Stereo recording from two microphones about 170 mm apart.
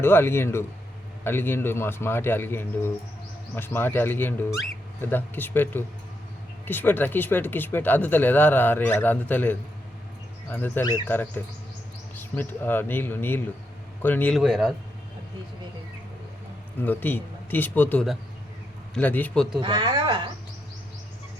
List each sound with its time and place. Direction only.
0.0 s speech: 15° left (ahead or behind)
16.8 s speech: 10° left (ahead or behind)
19.6 s speech: 25° right (ahead or behind)